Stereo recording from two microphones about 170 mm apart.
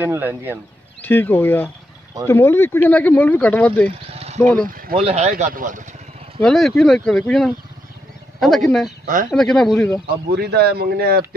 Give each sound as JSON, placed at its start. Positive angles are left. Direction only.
{"t": 0.0, "sound": "speech", "side_deg": -10}
{"t": 1.0, "sound": "speech", "side_deg": 10}
{"t": 4.1, "sound": "a sound", "side_deg": -40}
{"t": 4.4, "sound": "speech", "side_deg": 10}
{"t": 4.6, "sound": "speech", "side_deg": -55}
{"t": 4.9, "sound": "speech", "side_deg": -35}
{"t": 5.3, "sound": "speech", "side_deg": -55}
{"t": 6.4, "sound": "speech", "side_deg": 0}
{"t": 9.0, "sound": "speech", "side_deg": -50}
{"t": 9.3, "sound": "speech", "side_deg": 5}
{"t": 10.3, "sound": "speech", "side_deg": -70}